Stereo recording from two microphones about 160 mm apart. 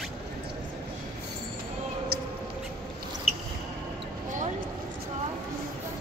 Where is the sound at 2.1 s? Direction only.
75° right (ahead or behind).